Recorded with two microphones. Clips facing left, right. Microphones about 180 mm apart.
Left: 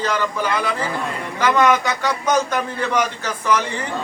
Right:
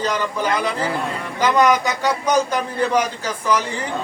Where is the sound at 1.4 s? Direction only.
15° right (ahead or behind).